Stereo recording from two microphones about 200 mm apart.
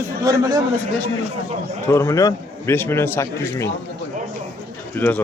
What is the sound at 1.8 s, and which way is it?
A man's voice, 15° left (ahead or behind).